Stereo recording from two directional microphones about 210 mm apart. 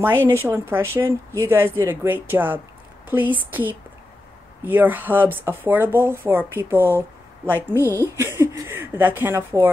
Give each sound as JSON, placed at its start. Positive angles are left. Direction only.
{"t": 0.0, "sound": "speech", "side_deg": -10}
{"t": 7.7, "sound": "a woman's voice", "side_deg": 10}
{"t": 8.2, "sound": "a sound", "side_deg": -10}